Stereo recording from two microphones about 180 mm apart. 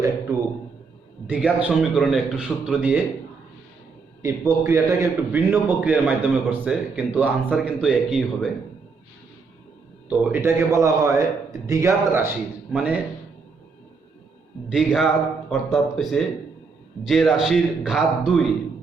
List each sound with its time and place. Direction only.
1.3 s a man's voice: 5° right (ahead or behind)
4.2 s a man's voice: 15° right (ahead or behind)
10.1 s a man's voice: 15° right (ahead or behind)
14.7 s a man's voice: 5° right (ahead or behind)